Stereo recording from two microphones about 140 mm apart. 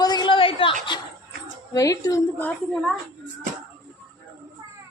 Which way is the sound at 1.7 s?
25° left (ahead or behind).